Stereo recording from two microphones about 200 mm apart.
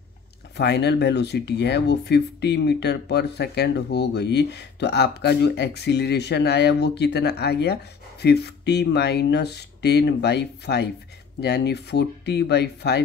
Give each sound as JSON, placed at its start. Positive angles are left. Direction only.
{"t": 0.6, "sound": "speech", "side_deg": 55}